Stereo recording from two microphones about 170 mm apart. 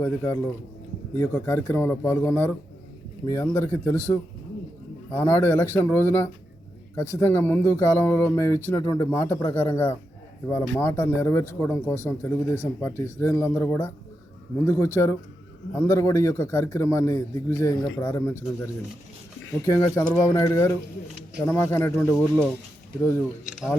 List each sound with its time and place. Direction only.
0.0 s speech: 15° left (ahead or behind)
20.0 s speech: 20° left (ahead or behind)